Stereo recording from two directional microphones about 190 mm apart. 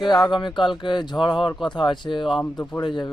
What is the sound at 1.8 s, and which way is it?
Speech, 25° left (ahead or behind).